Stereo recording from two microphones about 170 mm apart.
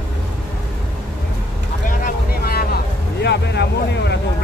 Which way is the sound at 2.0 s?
65° left (ahead or behind).